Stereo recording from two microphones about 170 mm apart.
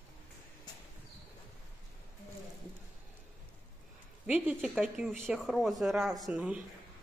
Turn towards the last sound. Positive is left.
turn(degrees=-5)  # may be behind; listen again after turning